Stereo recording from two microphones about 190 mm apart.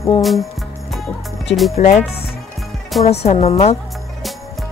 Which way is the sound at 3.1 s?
35° left (ahead or behind).